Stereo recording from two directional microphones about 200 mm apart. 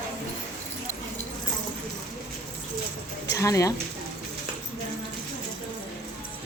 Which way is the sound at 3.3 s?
15° left (ahead or behind).